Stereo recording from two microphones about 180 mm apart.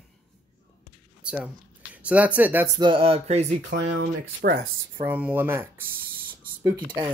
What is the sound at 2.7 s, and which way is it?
Speech, 30° right (ahead or behind).